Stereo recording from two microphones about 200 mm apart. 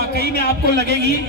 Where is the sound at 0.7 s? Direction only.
55° right (ahead or behind).